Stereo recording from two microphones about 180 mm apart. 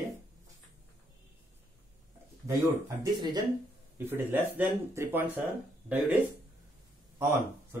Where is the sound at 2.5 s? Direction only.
20° right (ahead or behind).